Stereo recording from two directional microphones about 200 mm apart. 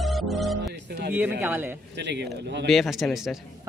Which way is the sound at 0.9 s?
55° right (ahead or behind).